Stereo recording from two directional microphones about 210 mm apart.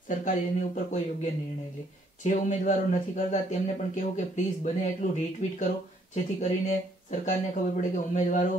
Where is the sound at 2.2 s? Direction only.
35° left (ahead or behind).